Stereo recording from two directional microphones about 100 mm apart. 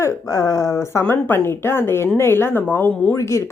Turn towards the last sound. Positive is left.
turn(degrees=30)  # may be behind; listen again after turning